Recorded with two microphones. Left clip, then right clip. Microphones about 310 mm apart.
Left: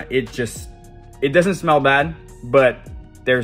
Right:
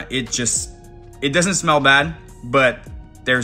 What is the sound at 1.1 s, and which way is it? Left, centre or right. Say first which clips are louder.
Speech: left 2 dB; centre.